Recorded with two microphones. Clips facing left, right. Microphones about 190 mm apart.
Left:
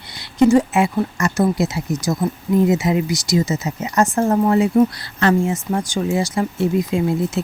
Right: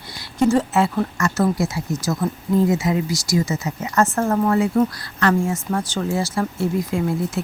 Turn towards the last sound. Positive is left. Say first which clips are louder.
# left 3 dB
turn(degrees=20)  # may be behind; listen again after turning